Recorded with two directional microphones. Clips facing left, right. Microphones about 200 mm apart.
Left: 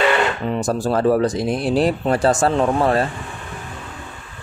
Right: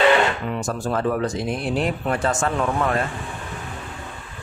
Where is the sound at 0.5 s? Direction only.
35° left (ahead or behind).